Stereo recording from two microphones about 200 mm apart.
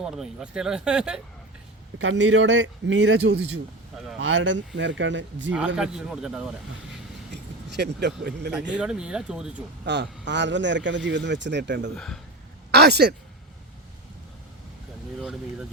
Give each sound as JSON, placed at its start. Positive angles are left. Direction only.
{"t": 0.0, "sound": "speech", "side_deg": 0}
{"t": 2.0, "sound": "speech", "side_deg": -70}
{"t": 3.9, "sound": "a sound", "side_deg": 0}
{"t": 4.2, "sound": "speech", "side_deg": -70}
{"t": 5.5, "sound": "speech", "side_deg": -5}
{"t": 7.7, "sound": "a man's voice", "side_deg": -55}
{"t": 8.7, "sound": "speech", "side_deg": -5}
{"t": 9.8, "sound": "a man's voice", "side_deg": -60}
{"t": 11.9, "sound": "speech", "side_deg": 5}
{"t": 12.7, "sound": "speech", "side_deg": -55}
{"t": 15.2, "sound": "speech", "side_deg": -5}